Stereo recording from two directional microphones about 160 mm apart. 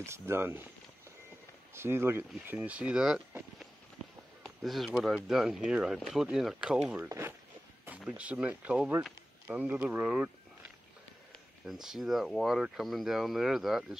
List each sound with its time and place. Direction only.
0.0 s speech: 15° right (ahead or behind)
1.7 s speech: 15° right (ahead or behind)
4.6 s speech: centre (ahead or behind)
11.6 s speech: centre (ahead or behind)